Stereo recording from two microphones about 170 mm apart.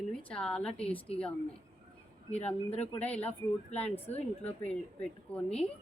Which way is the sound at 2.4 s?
40° left (ahead or behind).